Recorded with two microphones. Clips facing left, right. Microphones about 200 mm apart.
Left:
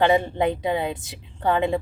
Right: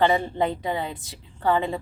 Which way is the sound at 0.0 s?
15° left (ahead or behind).